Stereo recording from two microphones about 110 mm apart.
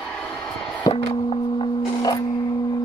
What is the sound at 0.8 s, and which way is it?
Music, 45° left (ahead or behind).